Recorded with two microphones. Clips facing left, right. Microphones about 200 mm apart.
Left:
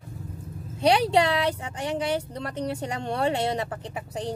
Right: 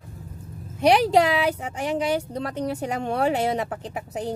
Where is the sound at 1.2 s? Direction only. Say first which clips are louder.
Right 3 dB; 10° right (ahead or behind).